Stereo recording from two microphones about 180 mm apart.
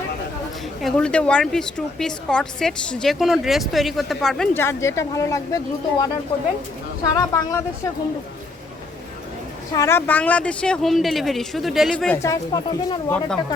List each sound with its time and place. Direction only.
0.8 s a woman's voice: centre (ahead or behind); by 7.6 s 20° left (ahead or behind)
9.7 s speech: 15° left (ahead or behind)